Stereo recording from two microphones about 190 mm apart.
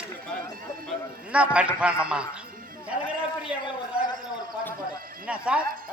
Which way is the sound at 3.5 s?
5° right (ahead or behind).